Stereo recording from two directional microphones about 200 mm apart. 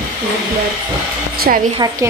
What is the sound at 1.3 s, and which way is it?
Speech, 50° right (ahead or behind).